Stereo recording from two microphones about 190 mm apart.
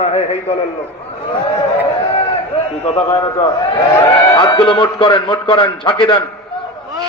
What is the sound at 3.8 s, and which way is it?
Speech, 15° left (ahead or behind).